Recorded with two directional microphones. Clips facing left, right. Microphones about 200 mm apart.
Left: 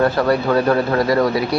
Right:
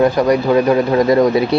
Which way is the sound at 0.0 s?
15° right (ahead or behind).